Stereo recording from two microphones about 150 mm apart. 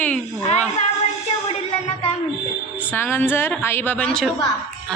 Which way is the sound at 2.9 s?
15° left (ahead or behind).